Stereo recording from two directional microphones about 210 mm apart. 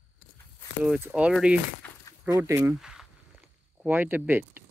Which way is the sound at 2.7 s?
Centre (ahead or behind).